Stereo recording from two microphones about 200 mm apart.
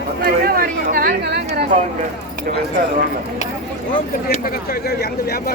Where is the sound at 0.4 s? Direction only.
45° right (ahead or behind).